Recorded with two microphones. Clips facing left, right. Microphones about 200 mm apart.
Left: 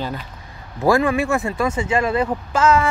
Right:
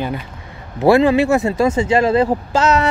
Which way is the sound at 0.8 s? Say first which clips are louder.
Right 5 dB; 25° right (ahead or behind).